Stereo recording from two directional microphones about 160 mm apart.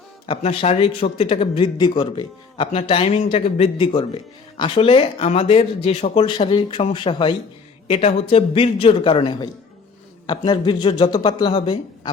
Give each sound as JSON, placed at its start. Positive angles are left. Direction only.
{"t": 0.3, "sound": "a man's voice", "side_deg": 40}